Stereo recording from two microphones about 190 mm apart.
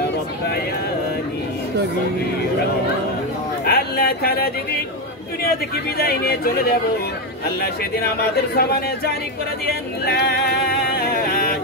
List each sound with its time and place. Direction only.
3.6 s speech: 55° left (ahead or behind)
5.9 s speech: 55° left (ahead or behind)